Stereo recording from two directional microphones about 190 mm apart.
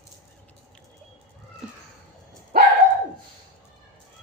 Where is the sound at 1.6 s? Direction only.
5° right (ahead or behind).